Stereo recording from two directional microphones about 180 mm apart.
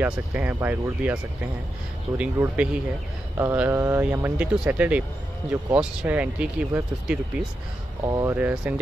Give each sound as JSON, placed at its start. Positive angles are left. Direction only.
{"t": 0.0, "sound": "speech", "side_deg": -10}
{"t": 8.0, "sound": "speech", "side_deg": -20}
{"t": 8.4, "sound": "speech", "side_deg": -10}